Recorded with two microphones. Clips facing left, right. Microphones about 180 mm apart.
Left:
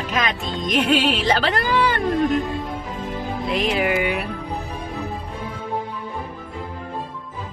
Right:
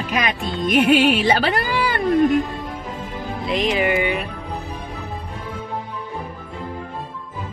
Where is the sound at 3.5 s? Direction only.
5° left (ahead or behind).